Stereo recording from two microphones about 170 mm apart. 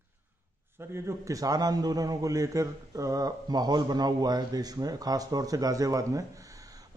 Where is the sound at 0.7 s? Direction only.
15° right (ahead or behind).